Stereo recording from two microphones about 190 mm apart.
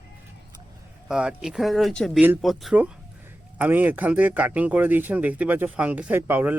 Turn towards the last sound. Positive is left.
turn(degrees=-10)  # may be behind; listen again after turning